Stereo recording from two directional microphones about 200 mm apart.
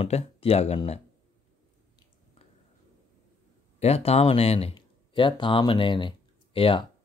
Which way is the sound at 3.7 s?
30° left (ahead or behind).